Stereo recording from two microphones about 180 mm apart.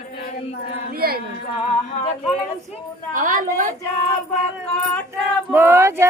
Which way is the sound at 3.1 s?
45° right (ahead or behind).